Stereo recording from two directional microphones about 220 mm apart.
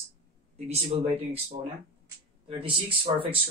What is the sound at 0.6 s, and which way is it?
Speech, 30° right (ahead or behind).